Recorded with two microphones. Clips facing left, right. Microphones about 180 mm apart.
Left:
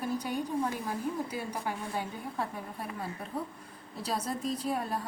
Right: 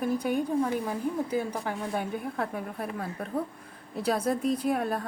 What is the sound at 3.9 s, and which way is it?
A woman's voice, 60° right (ahead or behind).